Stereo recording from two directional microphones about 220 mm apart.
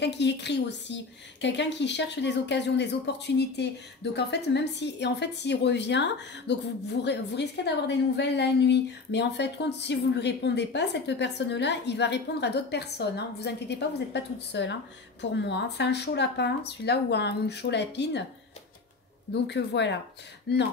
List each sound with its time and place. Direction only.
0.0 s a woman's voice: 50° left (ahead or behind)
19.3 s a woman's voice: 50° left (ahead or behind)